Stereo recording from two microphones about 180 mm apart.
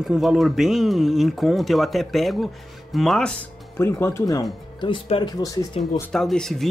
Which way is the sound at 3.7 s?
15° left (ahead or behind).